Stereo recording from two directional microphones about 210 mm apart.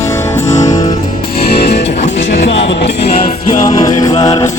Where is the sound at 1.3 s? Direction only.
50° left (ahead or behind).